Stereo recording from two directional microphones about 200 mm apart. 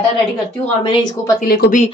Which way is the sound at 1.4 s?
50° left (ahead or behind).